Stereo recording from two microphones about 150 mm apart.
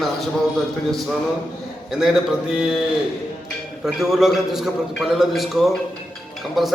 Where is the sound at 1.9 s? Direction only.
5° right (ahead or behind).